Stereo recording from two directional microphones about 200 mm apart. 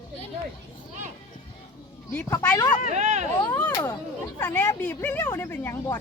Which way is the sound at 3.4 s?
10° left (ahead or behind).